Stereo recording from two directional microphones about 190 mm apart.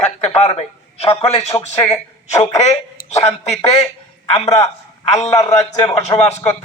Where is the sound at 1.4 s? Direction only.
15° left (ahead or behind).